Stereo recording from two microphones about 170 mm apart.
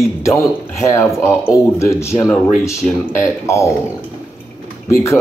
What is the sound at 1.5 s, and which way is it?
Speech, 15° left (ahead or behind).